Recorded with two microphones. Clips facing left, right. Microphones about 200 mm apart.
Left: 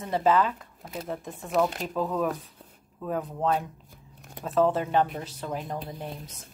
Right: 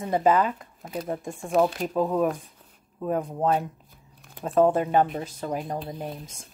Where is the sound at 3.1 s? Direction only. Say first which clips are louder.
Right 3 dB; 40° right (ahead or behind).